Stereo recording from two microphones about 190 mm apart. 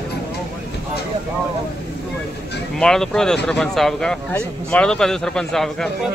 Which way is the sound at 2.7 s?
5° left (ahead or behind).